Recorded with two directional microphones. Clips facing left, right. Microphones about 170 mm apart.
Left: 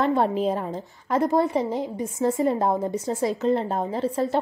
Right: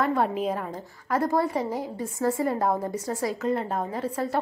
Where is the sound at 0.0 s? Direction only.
30° left (ahead or behind).